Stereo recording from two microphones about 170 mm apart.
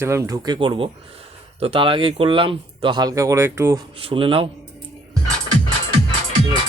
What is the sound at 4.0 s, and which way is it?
Speech, 30° right (ahead or behind).